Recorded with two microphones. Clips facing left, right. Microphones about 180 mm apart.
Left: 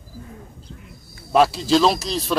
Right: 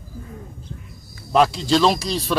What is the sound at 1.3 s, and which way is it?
Speech, 5° left (ahead or behind).